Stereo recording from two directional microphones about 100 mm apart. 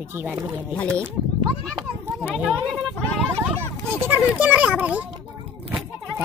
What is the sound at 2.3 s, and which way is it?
Speech, 10° right (ahead or behind).